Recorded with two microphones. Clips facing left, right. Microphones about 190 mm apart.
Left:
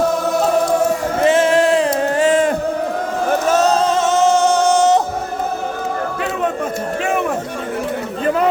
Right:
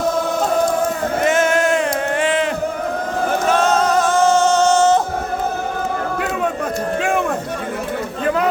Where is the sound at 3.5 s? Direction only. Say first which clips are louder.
Even; 35° left (ahead or behind); by 5.0 s 15° left (ahead or behind).